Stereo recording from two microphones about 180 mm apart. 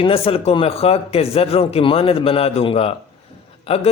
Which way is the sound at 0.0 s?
30° left (ahead or behind).